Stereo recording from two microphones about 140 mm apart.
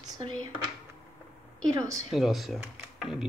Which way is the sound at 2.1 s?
Centre (ahead or behind).